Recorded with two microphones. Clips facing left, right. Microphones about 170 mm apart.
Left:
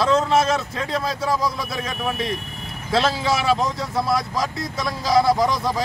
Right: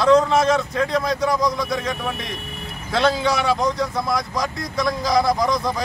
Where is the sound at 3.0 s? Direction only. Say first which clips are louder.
Right 5 dB; 5° left (ahead or behind).